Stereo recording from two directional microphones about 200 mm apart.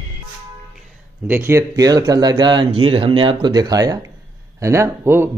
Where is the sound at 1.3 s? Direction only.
15° right (ahead or behind).